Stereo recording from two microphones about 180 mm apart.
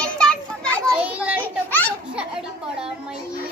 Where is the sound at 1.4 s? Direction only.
10° left (ahead or behind).